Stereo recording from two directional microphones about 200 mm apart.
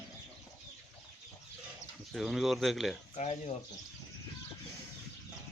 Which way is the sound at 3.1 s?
35° left (ahead or behind).